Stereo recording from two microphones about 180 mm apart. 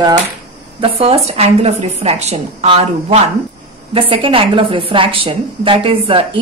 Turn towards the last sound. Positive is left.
turn(degrees=-30)  # may be behind; listen again after turning